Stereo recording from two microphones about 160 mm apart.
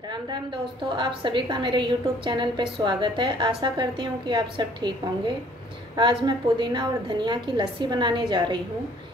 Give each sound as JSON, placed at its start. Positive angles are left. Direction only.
{"t": 0.8, "sound": "a woman's voice", "side_deg": -30}
{"t": 5.9, "sound": "a woman's voice", "side_deg": -30}